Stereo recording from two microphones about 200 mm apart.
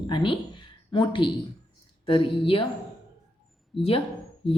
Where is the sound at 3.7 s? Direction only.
30° left (ahead or behind).